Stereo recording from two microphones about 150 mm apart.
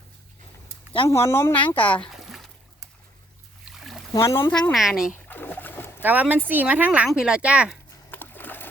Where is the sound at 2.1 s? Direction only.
Centre (ahead or behind).